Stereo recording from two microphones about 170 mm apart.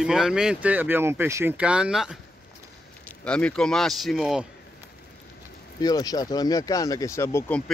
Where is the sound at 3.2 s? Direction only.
5° left (ahead or behind).